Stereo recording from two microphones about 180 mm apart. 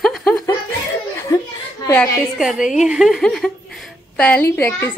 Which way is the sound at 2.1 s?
Centre (ahead or behind).